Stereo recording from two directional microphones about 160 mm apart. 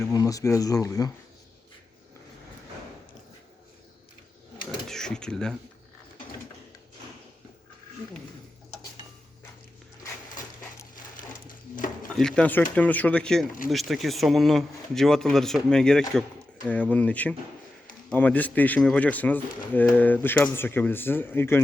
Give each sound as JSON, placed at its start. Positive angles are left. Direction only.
{"t": 0.1, "sound": "speech", "side_deg": 20}
{"t": 4.9, "sound": "cash register", "side_deg": 5}
{"t": 10.9, "sound": "a sound", "side_deg": 55}
{"t": 12.1, "sound": "speech", "side_deg": 5}